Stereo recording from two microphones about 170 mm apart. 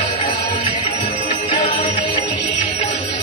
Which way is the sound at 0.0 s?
30° left (ahead or behind).